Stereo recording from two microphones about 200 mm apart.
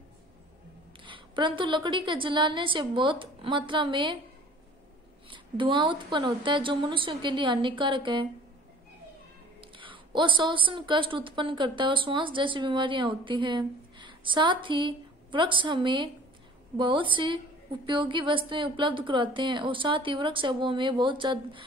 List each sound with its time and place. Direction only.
1.0 s a woman's voice: 25° right (ahead or behind)
5.3 s a woman's voice: 25° right (ahead or behind)
9.6 s a woman's voice: 25° right (ahead or behind)